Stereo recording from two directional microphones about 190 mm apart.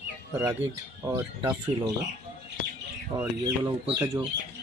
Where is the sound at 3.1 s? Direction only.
20° right (ahead or behind).